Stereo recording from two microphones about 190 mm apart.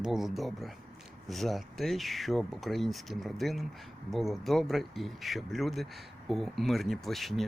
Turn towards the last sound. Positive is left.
turn(degrees=0)  # may be behind; listen again after turning